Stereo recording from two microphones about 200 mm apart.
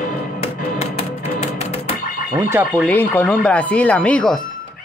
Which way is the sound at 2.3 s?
10° right (ahead or behind).